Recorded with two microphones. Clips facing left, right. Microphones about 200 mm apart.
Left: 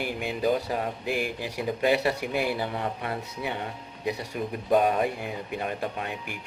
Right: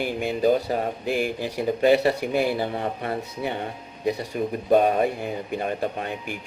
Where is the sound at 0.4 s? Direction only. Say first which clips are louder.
Right 4 dB; 35° right (ahead or behind).